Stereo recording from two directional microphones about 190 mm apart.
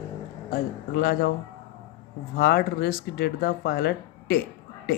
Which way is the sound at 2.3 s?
55° left (ahead or behind).